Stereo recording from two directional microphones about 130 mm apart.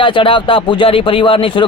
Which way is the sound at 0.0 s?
40° left (ahead or behind).